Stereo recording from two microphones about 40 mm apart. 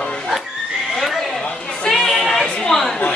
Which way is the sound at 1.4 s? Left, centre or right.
Left.